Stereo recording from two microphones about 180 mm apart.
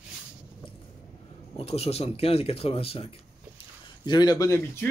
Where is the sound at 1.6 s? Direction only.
35° left (ahead or behind); by 4.8 s 15° left (ahead or behind).